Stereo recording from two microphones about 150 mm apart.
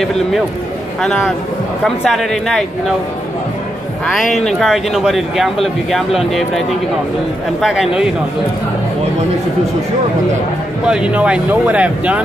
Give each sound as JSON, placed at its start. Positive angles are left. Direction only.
{"t": 1.0, "sound": "speech", "side_deg": 0}
{"t": 4.0, "sound": "speech", "side_deg": 0}
{"t": 7.6, "sound": "speech", "side_deg": 0}
{"t": 10.9, "sound": "speech", "side_deg": -5}